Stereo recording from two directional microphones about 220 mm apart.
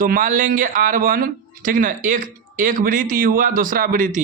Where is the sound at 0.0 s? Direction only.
40° right (ahead or behind).